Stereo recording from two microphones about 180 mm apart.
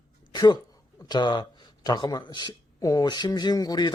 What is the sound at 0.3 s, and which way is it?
Speech, 25° left (ahead or behind).